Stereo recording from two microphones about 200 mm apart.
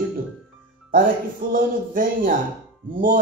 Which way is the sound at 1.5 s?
45° right (ahead or behind).